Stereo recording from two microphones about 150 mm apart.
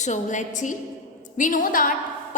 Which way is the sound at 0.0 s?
55° left (ahead or behind).